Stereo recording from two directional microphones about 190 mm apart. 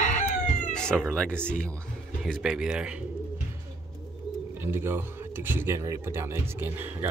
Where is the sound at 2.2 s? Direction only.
5° right (ahead or behind).